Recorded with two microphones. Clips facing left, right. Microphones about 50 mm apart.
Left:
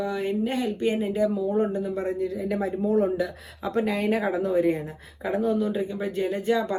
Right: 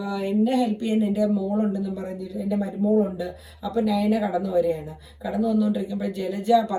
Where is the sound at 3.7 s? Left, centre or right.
Left.